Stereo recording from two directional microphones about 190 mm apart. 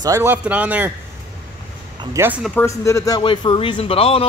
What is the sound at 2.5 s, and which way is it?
Speech, 15° left (ahead or behind).